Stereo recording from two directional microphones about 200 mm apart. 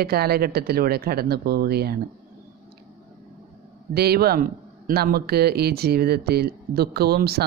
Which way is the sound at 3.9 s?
50° right (ahead or behind).